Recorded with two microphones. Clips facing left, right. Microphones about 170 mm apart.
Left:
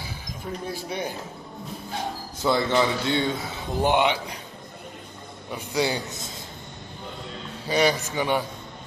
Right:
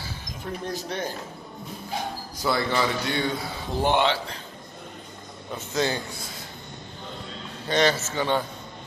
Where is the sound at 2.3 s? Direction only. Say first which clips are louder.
Left 3 dB; 20° left (ahead or behind).